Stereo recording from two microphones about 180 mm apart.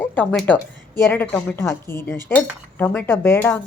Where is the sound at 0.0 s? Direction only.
10° left (ahead or behind).